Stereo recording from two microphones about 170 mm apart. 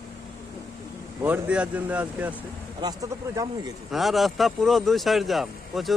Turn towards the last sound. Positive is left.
turn(degrees=0)  # may be behind; listen again after turning